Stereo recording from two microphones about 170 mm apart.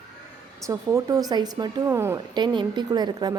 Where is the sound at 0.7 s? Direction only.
20° right (ahead or behind).